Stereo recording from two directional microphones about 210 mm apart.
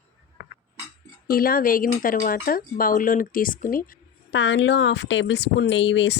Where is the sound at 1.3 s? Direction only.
45° left (ahead or behind).